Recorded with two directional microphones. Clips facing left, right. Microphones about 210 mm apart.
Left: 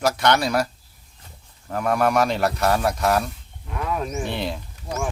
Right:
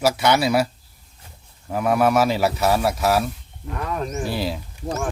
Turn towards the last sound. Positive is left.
turn(degrees=-5)  # may be behind; listen again after turning